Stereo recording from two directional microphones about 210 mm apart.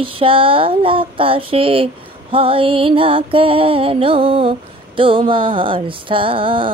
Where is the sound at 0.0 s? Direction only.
25° right (ahead or behind).